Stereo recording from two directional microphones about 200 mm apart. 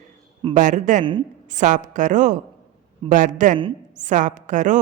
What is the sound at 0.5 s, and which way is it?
A woman's voice, 40° right (ahead or behind).